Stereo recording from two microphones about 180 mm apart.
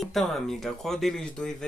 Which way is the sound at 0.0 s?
Centre (ahead or behind).